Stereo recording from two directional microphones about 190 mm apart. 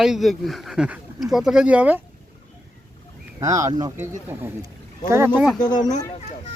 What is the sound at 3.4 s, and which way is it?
Speech, 15° right (ahead or behind).